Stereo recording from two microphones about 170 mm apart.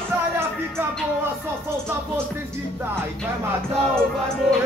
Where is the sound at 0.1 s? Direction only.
15° right (ahead or behind).